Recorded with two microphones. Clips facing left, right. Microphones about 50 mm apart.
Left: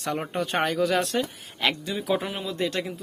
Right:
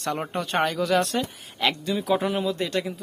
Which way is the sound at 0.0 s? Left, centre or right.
Centre.